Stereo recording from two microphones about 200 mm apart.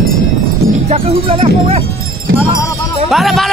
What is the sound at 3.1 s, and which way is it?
Speech, centre (ahead or behind).